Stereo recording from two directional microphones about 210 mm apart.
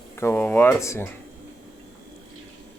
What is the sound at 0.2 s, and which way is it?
Speech, 10° left (ahead or behind).